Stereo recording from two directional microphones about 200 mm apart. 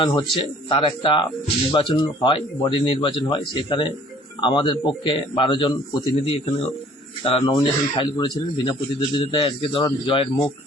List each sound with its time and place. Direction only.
0.0 s speech: 25° left (ahead or behind)